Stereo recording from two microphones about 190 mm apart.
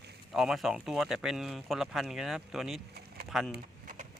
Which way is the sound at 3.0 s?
55° right (ahead or behind).